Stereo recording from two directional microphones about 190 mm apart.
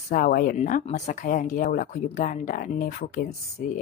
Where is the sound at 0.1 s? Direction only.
50° left (ahead or behind).